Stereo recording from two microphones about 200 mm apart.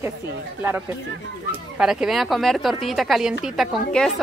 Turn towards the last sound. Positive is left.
turn(degrees=0)  # may be behind; listen again after turning